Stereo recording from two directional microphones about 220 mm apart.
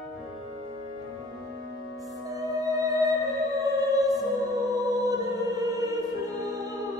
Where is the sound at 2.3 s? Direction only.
15° right (ahead or behind).